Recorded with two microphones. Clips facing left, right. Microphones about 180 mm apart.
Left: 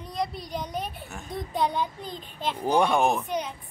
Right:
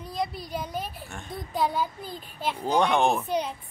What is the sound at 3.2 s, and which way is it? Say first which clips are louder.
Speech: right 2 dB; 30° right (ahead or behind).